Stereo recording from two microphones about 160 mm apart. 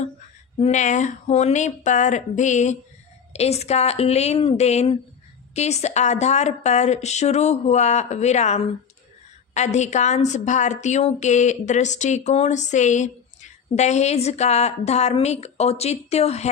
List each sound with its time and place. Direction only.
0.6 s a woman's voice: 50° left (ahead or behind)